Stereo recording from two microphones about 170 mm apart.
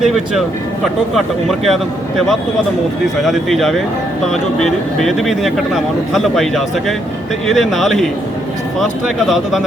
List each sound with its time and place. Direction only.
0.0 s speech: centre (ahead or behind)